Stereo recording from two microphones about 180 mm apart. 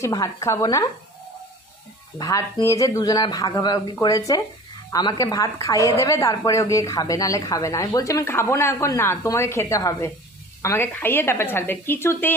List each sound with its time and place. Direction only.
0.0 s a woman's voice: 20° left (ahead or behind)
2.1 s a woman's voice: 20° left (ahead or behind)